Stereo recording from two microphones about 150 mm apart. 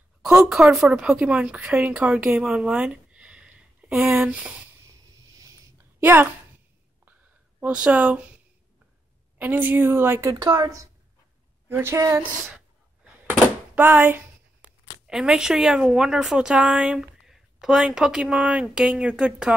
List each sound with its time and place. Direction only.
0.2 s speech: 5° right (ahead or behind)
4.8 s a sound: 20° right (ahead or behind)
7.6 s a woman's voice: 5° right (ahead or behind)
9.4 s a woman's voice: 10° right (ahead or behind)
13.7 s a woman's voice: 15° right (ahead or behind)